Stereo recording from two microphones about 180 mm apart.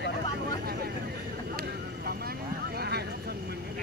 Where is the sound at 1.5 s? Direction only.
60° right (ahead or behind).